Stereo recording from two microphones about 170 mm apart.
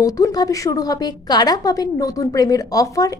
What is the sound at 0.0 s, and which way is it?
A woman's voice, 20° left (ahead or behind).